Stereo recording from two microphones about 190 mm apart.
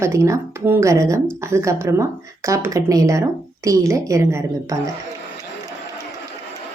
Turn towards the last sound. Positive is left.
turn(degrees=-15)  # may be behind; listen again after turning